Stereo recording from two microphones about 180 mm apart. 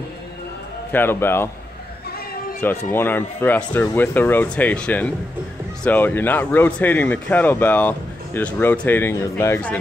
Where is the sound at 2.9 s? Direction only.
10° left (ahead or behind).